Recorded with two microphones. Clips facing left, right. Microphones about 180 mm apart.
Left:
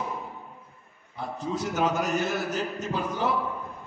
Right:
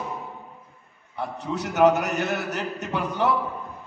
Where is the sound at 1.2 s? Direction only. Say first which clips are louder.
Right 1 dB; 65° right (ahead or behind).